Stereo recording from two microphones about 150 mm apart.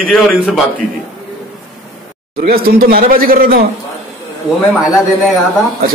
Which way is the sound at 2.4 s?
80° right.